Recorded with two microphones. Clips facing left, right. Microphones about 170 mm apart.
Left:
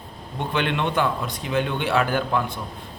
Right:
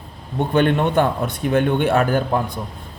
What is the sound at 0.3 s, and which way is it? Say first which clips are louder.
A man's voice: right 7 dB; 45° right (ahead or behind).